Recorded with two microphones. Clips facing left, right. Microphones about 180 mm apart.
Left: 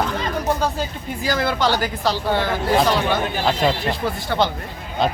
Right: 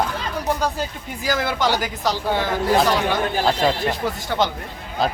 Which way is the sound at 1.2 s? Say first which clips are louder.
Left 1 dB; 10° right (ahead or behind).